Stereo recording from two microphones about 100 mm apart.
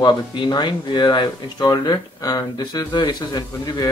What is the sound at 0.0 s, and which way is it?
Speech, 50° left (ahead or behind).